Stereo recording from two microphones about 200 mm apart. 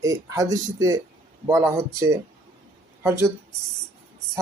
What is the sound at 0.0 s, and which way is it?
Speech, 15° right (ahead or behind).